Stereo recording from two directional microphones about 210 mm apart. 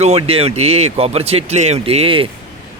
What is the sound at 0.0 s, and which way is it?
Speech, 30° right (ahead or behind).